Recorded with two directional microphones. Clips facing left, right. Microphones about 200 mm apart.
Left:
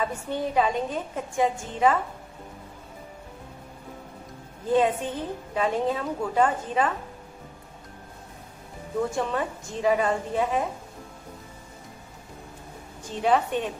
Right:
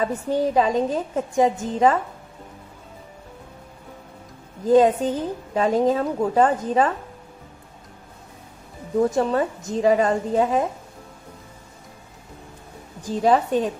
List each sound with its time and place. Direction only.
0.0 s a woman's voice: 40° right (ahead or behind)
4.6 s a woman's voice: 40° right (ahead or behind)
9.1 s a woman's voice: 40° right (ahead or behind)
13.0 s a woman's voice: 40° right (ahead or behind)